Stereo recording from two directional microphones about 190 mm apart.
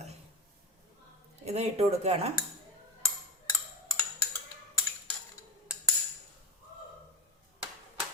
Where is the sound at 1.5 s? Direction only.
35° right (ahead or behind).